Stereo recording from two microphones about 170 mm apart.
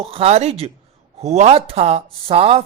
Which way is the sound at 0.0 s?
35° right (ahead or behind).